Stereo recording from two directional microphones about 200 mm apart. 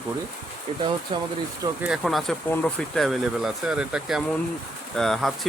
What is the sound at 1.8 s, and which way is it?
Speech, centre (ahead or behind).